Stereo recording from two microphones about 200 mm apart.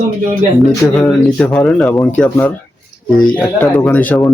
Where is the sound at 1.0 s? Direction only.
10° left (ahead or behind).